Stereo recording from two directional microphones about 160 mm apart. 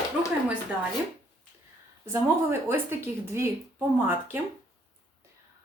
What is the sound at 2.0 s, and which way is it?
A woman's voice, 15° right (ahead or behind).